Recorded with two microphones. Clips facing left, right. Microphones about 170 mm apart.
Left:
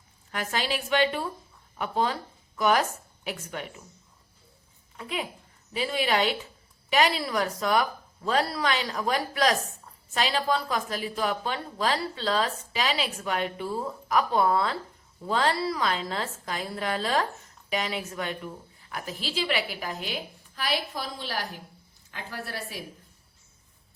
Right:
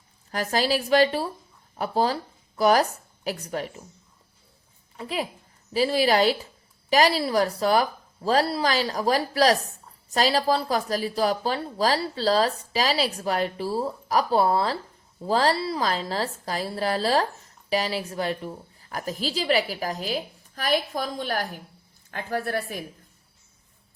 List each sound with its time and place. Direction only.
0.3 s a woman's voice: 35° right (ahead or behind)
4.9 s a woman's voice: 35° right (ahead or behind); by 22.8 s 55° right (ahead or behind)